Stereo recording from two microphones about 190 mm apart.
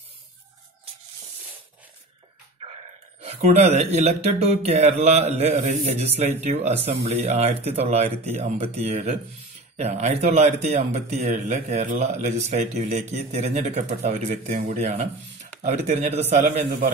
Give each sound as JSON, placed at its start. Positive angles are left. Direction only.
{"t": 3.4, "sound": "speech", "side_deg": -35}